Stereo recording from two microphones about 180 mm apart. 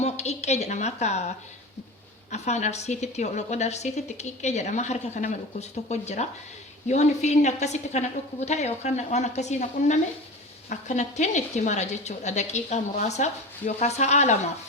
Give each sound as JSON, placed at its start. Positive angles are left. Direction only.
{"t": 0.0, "sound": "a woman's voice", "side_deg": 40}
{"t": 2.3, "sound": "a woman's voice", "side_deg": 40}